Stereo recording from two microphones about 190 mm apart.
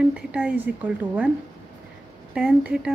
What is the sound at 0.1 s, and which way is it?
Speech, 5° right (ahead or behind).